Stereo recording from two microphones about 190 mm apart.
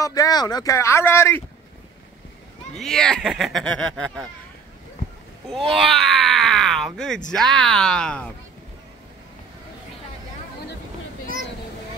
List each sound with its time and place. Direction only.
0.0 s speech: 20° left (ahead or behind)
2.7 s speech: 5° left (ahead or behind)
5.8 s speech: centre (ahead or behind)